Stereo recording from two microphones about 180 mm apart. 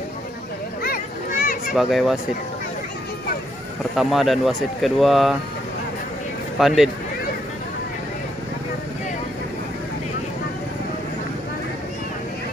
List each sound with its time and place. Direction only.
0.8 s a sound: 55° left (ahead or behind)
1.7 s speech: centre (ahead or behind)
3.9 s speech: centre (ahead or behind)
6.6 s speech: centre (ahead or behind)